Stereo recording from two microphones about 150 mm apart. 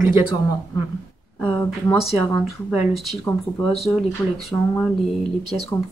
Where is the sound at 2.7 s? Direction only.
Centre (ahead or behind).